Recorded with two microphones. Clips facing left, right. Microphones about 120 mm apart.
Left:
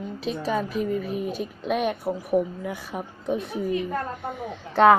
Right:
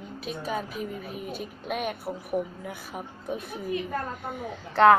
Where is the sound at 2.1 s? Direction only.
25° left (ahead or behind).